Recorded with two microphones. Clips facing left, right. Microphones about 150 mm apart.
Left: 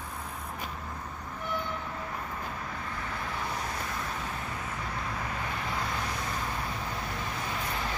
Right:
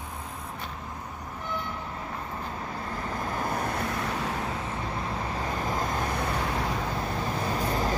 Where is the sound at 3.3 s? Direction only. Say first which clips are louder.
Right 7 dB; 50° right (ahead or behind).